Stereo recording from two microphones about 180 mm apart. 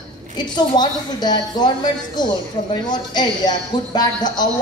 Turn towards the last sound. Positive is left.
turn(degrees=20)  # may be behind; listen again after turning